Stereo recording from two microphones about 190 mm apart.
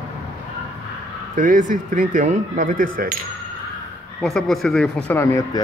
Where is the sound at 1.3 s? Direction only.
45° right (ahead or behind).